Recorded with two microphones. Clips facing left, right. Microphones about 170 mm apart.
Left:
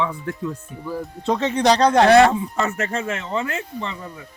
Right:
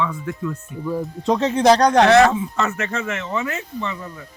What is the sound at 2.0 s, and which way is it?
Speech, 30° left (ahead or behind).